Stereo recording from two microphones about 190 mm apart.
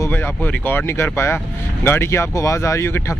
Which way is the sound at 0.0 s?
10° left (ahead or behind).